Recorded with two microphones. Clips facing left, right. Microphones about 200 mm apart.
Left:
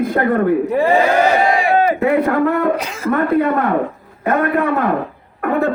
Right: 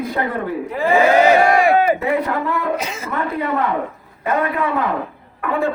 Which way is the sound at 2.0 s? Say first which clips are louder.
Left 5 dB; 50° left (ahead or behind).